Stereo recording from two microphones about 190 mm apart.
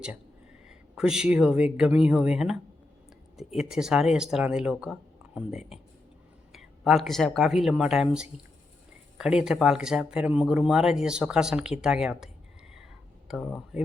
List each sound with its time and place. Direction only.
0.7 s speech: 5° right (ahead or behind)